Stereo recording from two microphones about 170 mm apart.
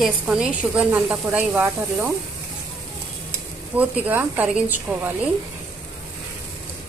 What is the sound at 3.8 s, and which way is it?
A woman's voice, 10° right (ahead or behind).